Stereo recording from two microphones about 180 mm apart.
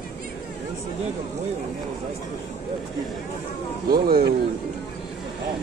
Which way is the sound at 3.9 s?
55° right (ahead or behind).